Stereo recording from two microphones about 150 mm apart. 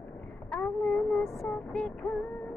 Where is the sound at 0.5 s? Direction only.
10° left (ahead or behind).